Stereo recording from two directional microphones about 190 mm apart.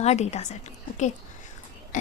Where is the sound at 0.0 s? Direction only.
35° left (ahead or behind).